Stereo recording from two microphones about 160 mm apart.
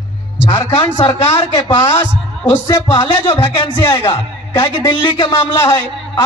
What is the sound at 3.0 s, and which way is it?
A man's voice, 20° left (ahead or behind).